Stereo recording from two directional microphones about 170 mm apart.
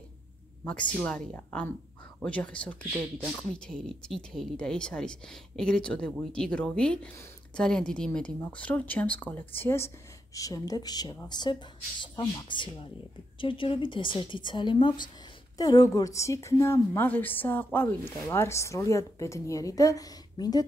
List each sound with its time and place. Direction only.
0.7 s a woman's voice: 5° left (ahead or behind); by 20.6 s 20° left (ahead or behind)